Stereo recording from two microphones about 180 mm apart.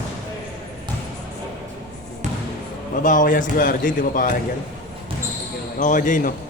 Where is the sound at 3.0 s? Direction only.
45° left (ahead or behind).